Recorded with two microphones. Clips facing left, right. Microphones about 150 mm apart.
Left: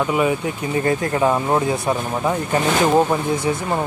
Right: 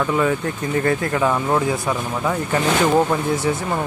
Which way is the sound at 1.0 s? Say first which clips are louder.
Left 1 dB; 25° left (ahead or behind).